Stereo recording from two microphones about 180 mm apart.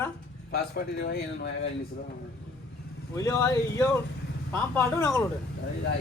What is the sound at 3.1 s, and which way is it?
Speech, 15° left (ahead or behind).